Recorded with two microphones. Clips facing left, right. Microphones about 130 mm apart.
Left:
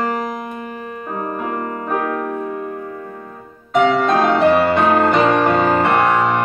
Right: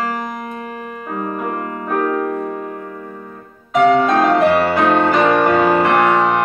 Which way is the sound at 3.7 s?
Centre (ahead or behind).